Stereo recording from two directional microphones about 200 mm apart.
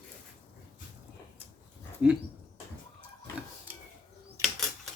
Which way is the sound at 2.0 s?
5° right (ahead or behind).